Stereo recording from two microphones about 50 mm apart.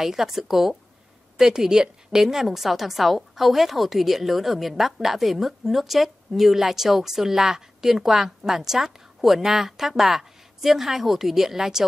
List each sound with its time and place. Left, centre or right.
0.0 s a woman's voice: centre